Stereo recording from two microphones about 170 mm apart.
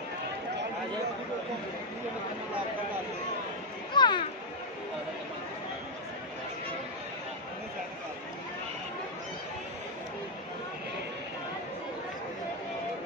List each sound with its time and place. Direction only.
3.9 s children playing: 25° left (ahead or behind)